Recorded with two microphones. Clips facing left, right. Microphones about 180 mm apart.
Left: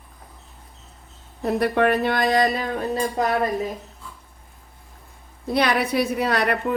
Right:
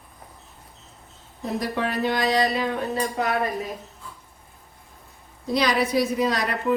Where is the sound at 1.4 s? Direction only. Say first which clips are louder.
Left 7 dB; 60° left (ahead or behind).